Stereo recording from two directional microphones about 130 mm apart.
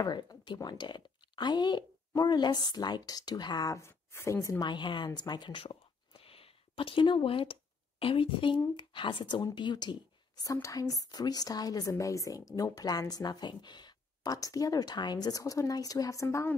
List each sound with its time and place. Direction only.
0.0 s speech: 35° left (ahead or behind)
4.6 s speech: 35° left (ahead or behind)